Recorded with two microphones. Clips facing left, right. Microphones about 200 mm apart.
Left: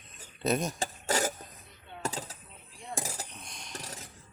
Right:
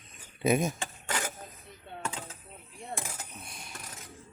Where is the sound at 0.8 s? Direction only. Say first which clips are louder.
Left 5 dB; 35° left (ahead or behind).